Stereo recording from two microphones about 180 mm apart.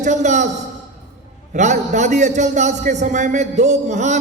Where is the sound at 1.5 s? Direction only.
40° right (ahead or behind).